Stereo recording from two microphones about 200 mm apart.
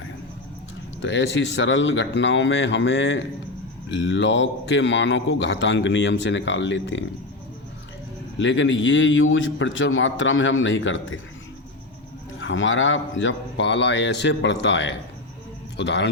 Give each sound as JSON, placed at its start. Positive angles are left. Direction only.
{"t": 1.0, "sound": "a man's voice", "side_deg": 65}
{"t": 8.4, "sound": "a man's voice", "side_deg": 70}
{"t": 12.4, "sound": "a man's voice", "side_deg": 70}